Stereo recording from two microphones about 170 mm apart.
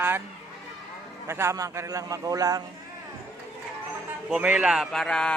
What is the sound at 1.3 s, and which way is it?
A man's voice, 15° right (ahead or behind).